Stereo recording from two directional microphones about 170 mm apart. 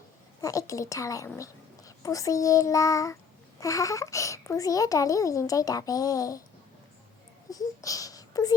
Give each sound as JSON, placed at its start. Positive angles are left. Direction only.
{"t": 0.4, "sound": "a child's voice", "side_deg": 20}
{"t": 7.5, "sound": "a child's voice", "side_deg": 20}